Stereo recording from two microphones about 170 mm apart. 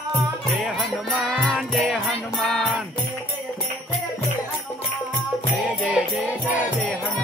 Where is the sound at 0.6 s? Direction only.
Centre (ahead or behind).